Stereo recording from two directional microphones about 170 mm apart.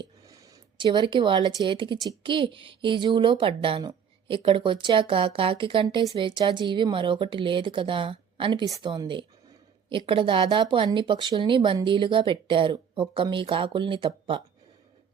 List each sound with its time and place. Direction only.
0.2 s speech: 20° right (ahead or behind)